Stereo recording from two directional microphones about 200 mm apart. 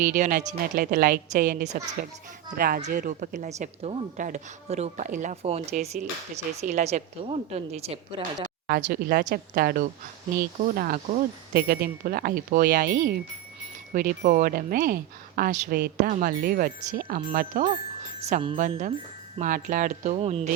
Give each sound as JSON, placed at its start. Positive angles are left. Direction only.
{"t": 0.0, "sound": "a woman's voice", "side_deg": -40}
{"t": 8.6, "sound": "speech", "side_deg": -50}
{"t": 18.2, "sound": "a woman's voice", "side_deg": -35}
{"t": 19.4, "sound": "a woman's voice", "side_deg": -40}